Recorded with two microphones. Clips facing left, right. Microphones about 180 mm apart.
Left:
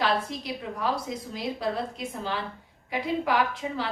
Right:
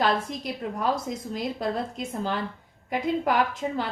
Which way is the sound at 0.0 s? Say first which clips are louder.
Right 2 dB; 45° right (ahead or behind).